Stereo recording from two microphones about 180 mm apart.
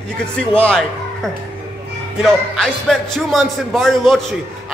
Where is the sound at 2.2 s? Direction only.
5° left (ahead or behind).